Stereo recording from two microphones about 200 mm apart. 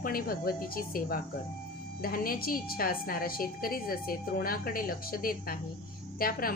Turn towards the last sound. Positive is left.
turn(degrees=45)  # may be behind; listen again after turning